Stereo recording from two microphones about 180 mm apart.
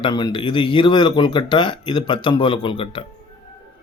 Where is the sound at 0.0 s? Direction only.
25° left (ahead or behind).